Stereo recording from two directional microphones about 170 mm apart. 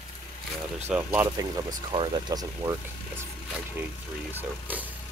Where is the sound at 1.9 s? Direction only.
25° right (ahead or behind).